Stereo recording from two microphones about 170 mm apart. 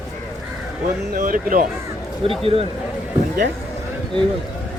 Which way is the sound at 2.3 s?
35° right (ahead or behind).